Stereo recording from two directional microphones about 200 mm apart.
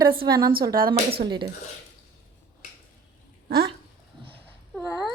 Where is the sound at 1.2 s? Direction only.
40° right (ahead or behind).